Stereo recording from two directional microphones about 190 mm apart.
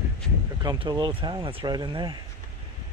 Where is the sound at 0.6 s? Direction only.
20° right (ahead or behind).